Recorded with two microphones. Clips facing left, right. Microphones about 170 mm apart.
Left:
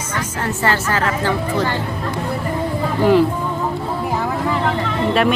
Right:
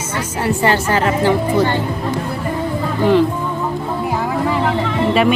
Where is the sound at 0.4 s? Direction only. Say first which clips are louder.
Right 4 dB; 15° right (ahead or behind).